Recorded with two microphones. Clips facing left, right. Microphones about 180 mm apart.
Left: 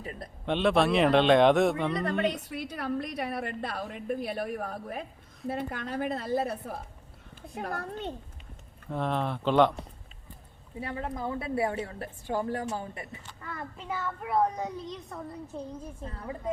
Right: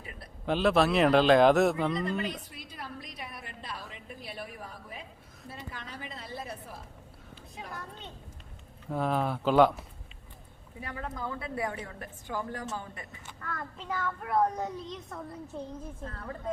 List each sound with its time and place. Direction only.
0.4 s a child's voice: centre (ahead or behind)
2.2 s a woman's voice: 65° left (ahead or behind)
8.9 s a child's voice: 5° right (ahead or behind)
10.8 s a woman's voice: 25° left (ahead or behind)
13.4 s a child's voice: 10° left (ahead or behind)
16.0 s a woman's voice: 10° left (ahead or behind)